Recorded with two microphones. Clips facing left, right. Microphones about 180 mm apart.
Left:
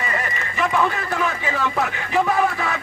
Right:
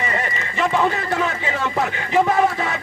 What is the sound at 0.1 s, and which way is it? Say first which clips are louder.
Run: right 2 dB; 25° right (ahead or behind).